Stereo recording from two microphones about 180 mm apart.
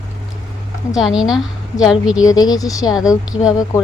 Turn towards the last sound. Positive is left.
turn(degrees=-5)  # may be behind; listen again after turning